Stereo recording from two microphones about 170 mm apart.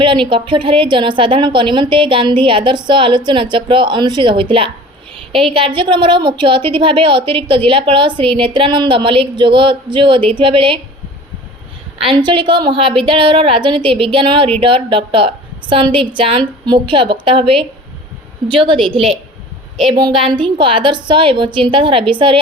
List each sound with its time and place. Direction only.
0.0 s a woman's voice: 30° right (ahead or behind)
12.0 s a woman's voice: 30° right (ahead or behind)